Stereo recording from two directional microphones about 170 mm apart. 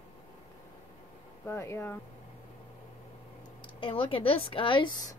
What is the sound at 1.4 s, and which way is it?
Speech, 15° left (ahead or behind).